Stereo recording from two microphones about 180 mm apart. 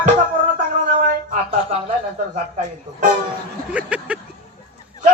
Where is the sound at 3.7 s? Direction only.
5° right (ahead or behind).